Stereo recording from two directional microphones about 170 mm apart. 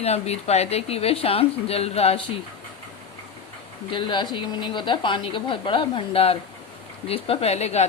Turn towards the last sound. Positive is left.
turn(degrees=40)  # may be behind; listen again after turning